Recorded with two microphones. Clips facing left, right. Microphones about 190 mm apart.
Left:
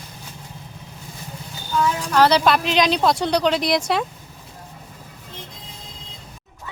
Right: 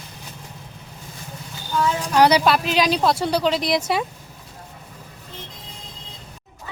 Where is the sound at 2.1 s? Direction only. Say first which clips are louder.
Even; 15° right (ahead or behind).